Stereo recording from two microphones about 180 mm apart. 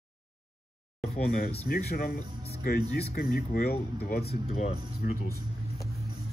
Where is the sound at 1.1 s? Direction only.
50° left (ahead or behind).